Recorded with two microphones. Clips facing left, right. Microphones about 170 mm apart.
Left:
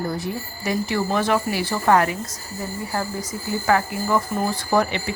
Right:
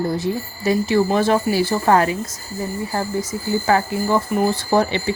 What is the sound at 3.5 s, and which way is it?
Speech, 25° right (ahead or behind).